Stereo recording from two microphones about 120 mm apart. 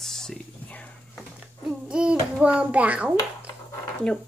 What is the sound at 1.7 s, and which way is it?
A child's voice, 5° right (ahead or behind).